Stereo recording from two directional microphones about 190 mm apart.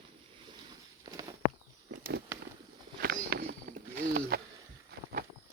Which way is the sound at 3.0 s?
55° right (ahead or behind).